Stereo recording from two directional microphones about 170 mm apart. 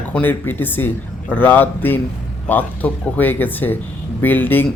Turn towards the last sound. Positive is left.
turn(degrees=10)  # may be behind; listen again after turning